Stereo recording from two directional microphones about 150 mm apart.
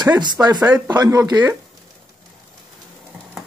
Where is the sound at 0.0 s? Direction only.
30° right (ahead or behind).